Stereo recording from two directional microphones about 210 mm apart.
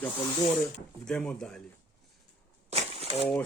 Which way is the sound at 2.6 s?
30° right (ahead or behind).